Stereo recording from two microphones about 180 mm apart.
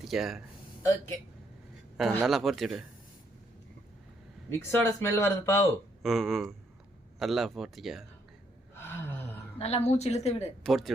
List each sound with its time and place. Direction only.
0.0 s speech: centre (ahead or behind)
2.0 s a man's voice: centre (ahead or behind)
4.7 s speech: 15° left (ahead or behind)
6.0 s a man's voice: centre (ahead or behind)
8.7 s gasp: 10° left (ahead or behind)
9.6 s a woman's voice: 35° left (ahead or behind)
10.6 s a man's voice: centre (ahead or behind)